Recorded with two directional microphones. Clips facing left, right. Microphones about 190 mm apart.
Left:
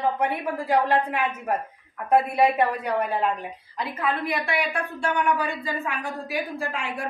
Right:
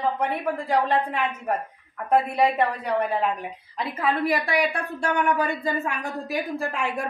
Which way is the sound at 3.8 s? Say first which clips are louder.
Right 2 dB; 30° right (ahead or behind).